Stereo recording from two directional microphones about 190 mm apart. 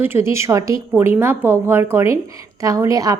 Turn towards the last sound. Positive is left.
turn(degrees=-20)  # may be behind; listen again after turning